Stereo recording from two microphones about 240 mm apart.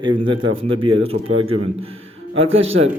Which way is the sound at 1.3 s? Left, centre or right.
Right.